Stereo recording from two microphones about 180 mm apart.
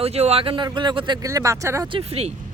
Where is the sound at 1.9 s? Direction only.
30° right (ahead or behind).